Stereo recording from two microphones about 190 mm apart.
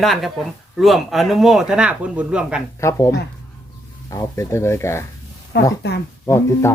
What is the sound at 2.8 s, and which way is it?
Speech, 15° left (ahead or behind).